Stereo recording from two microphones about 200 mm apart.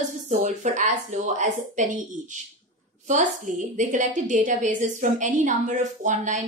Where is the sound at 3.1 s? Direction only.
40° right (ahead or behind).